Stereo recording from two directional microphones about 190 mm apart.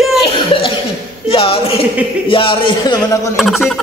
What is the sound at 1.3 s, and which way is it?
A woman's voice, 30° left (ahead or behind).